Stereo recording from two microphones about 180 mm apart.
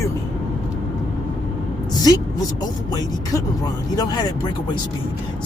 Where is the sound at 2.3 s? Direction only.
20° left (ahead or behind).